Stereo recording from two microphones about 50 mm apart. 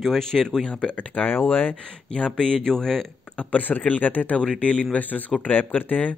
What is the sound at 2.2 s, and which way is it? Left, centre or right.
Speech, centre.